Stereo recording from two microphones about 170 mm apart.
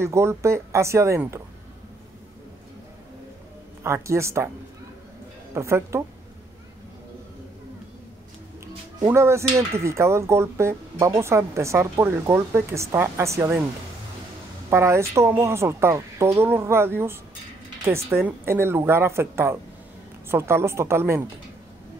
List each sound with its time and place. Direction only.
0.0 s speech: 15° right (ahead or behind)
3.8 s speech: 15° right (ahead or behind)
5.5 s speech: 15° right (ahead or behind)
9.0 s speech: 15° right (ahead or behind)
14.7 s speech: 15° right (ahead or behind)